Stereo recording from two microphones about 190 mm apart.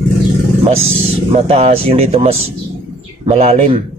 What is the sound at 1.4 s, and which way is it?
Speech, 30° right (ahead or behind).